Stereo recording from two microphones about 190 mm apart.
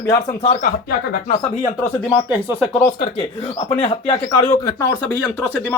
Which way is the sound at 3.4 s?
30° left (ahead or behind).